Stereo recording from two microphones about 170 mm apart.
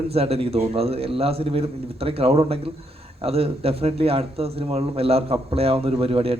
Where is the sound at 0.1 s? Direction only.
35° right (ahead or behind).